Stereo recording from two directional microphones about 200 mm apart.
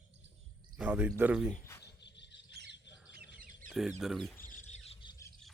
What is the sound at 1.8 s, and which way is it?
Cricket, 60° left (ahead or behind).